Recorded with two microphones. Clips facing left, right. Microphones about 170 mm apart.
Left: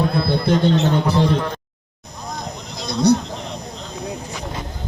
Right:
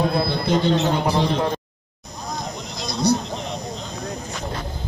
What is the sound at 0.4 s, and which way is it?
Speech, 55° left (ahead or behind).